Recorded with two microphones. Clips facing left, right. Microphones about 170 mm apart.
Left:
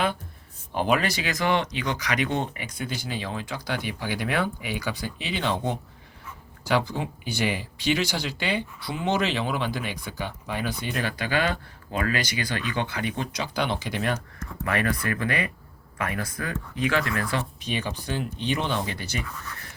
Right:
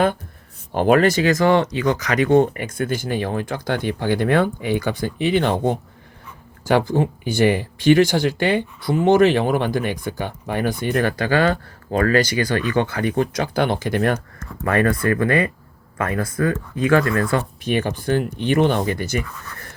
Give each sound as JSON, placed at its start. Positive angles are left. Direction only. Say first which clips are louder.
{"t": 0.7, "sound": "speech", "louder": "right 9 dB", "side_deg": -50}